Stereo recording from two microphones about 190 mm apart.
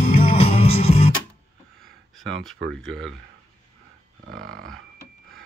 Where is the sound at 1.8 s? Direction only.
Centre (ahead or behind).